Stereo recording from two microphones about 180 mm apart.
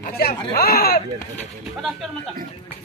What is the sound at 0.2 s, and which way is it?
Speech, 55° left (ahead or behind).